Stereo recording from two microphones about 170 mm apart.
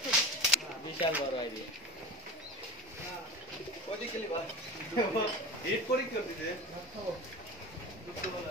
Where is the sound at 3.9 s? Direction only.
35° left (ahead or behind).